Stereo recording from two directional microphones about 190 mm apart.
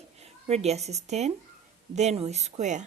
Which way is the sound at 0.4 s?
35° right (ahead or behind).